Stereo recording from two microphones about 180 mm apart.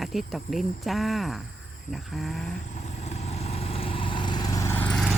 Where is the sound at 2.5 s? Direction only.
40° left (ahead or behind); by 5.1 s 5° left (ahead or behind).